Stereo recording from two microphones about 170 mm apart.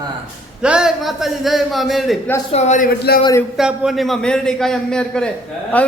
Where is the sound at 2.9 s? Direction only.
65° left (ahead or behind).